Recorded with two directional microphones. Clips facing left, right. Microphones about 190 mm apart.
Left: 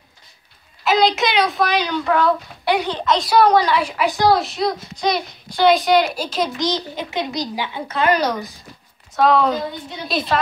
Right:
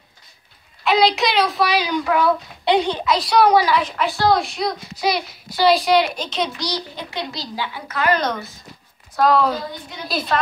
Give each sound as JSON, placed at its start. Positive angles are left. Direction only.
{"t": 0.8, "sound": "a woman's voice", "side_deg": 0}
{"t": 2.6, "sound": "a child's voice", "side_deg": -20}
{"t": 3.0, "sound": "a woman's voice", "side_deg": -5}
{"t": 3.7, "sound": "a woman's voice", "side_deg": 10}
{"t": 4.3, "sound": "a woman's voice", "side_deg": 0}
{"t": 6.6, "sound": "a child's voice", "side_deg": 20}
{"t": 8.2, "sound": "a woman's voice", "side_deg": 10}
{"t": 9.1, "sound": "a woman's voice", "side_deg": 0}